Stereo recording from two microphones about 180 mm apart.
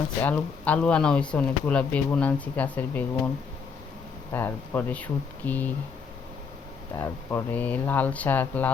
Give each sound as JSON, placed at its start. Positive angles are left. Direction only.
{"t": 0.2, "sound": "speech", "side_deg": 10}
{"t": 4.3, "sound": "speech", "side_deg": 15}
{"t": 6.9, "sound": "speech", "side_deg": 15}